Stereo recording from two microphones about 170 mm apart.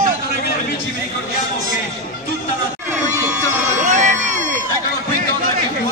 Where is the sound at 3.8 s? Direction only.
50° right (ahead or behind).